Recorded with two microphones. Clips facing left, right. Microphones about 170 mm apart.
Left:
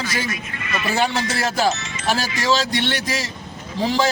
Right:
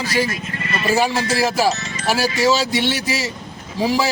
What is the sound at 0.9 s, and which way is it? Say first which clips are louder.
Speech: right 4 dB; 5° right (ahead or behind).